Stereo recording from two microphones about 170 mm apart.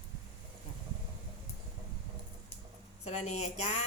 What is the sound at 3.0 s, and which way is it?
Speech, 40° left (ahead or behind).